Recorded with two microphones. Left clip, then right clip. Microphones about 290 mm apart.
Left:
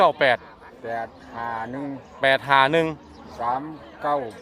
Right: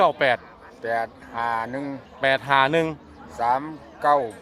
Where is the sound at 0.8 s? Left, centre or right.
Right.